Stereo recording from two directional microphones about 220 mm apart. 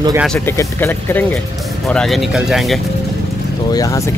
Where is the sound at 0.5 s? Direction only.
10° left (ahead or behind).